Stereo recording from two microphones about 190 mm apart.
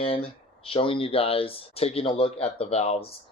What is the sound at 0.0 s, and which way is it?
Speech, 30° left (ahead or behind).